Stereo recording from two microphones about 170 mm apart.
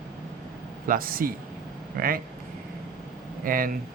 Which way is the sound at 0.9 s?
55° right (ahead or behind).